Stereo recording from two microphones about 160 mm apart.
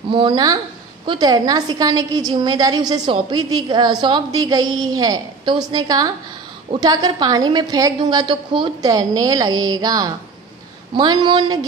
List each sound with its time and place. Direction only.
0.1 s a woman's voice: 30° right (ahead or behind)